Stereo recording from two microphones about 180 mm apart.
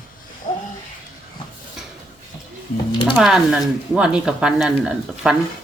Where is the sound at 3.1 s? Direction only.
Centre (ahead or behind).